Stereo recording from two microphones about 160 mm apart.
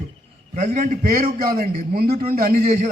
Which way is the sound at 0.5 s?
55° right (ahead or behind).